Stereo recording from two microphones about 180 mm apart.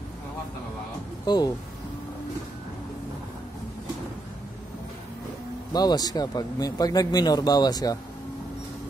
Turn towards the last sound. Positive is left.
turn(degrees=20)  # may be behind; listen again after turning